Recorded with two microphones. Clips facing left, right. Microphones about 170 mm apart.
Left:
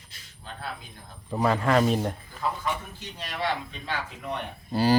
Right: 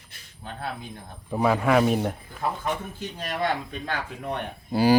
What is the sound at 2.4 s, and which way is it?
A man's voice, 50° right (ahead or behind).